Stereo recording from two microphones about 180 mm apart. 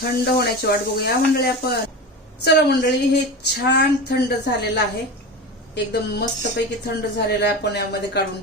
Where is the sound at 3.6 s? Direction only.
65° left (ahead or behind).